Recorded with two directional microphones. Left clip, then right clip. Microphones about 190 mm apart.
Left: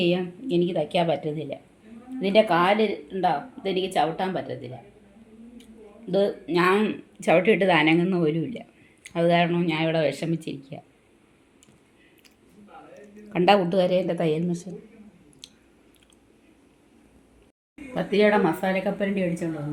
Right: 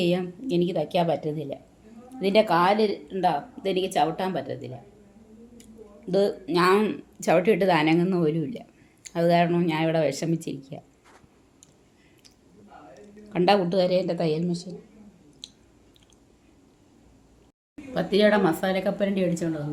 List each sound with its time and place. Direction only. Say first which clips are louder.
0.0 s speech: left 1 dB; centre (ahead or behind)
6.1 s a woman's voice: even; 5° right (ahead or behind)
12.9 s a woman's voice: left 2 dB; centre (ahead or behind)
17.9 s a woman's voice: even; 5° right (ahead or behind)